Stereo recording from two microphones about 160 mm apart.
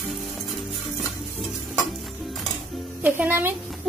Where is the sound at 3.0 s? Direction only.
10° right (ahead or behind).